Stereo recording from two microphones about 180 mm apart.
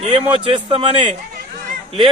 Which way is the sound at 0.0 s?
30° right (ahead or behind).